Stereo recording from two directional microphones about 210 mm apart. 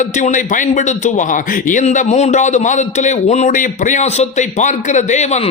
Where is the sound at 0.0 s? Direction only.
35° left (ahead or behind).